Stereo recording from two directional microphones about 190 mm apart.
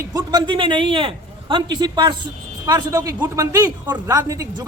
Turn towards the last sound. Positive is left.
turn(degrees=-20)  # may be behind; listen again after turning